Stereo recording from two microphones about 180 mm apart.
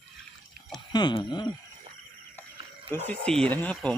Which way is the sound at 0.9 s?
25° left (ahead or behind).